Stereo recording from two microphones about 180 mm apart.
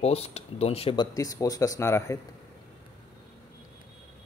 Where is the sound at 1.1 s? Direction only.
20° left (ahead or behind).